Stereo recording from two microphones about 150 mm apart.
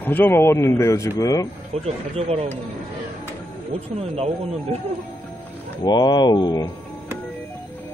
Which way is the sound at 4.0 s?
45° right (ahead or behind).